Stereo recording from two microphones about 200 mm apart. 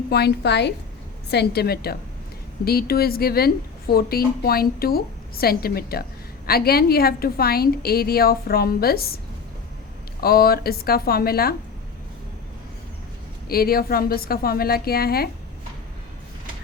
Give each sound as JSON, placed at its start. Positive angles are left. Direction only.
{"t": 0.1, "sound": "a woman's voice", "side_deg": 55}
{"t": 13.5, "sound": "a woman's voice", "side_deg": 50}